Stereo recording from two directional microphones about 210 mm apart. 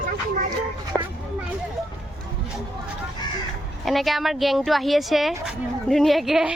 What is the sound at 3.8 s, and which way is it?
Speech, centre (ahead or behind).